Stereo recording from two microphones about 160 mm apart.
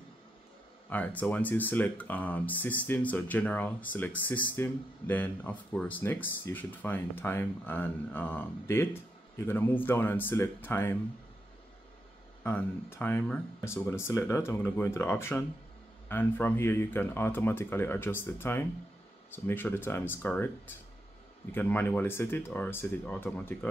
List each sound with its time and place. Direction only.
0.8 s speech: 10° left (ahead or behind)
12.4 s speech: 10° left (ahead or behind)